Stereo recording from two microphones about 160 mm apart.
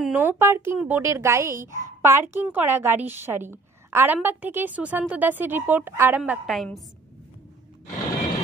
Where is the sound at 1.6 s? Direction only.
50° right (ahead or behind).